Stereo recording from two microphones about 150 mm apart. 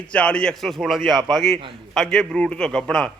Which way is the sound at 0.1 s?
5° left (ahead or behind).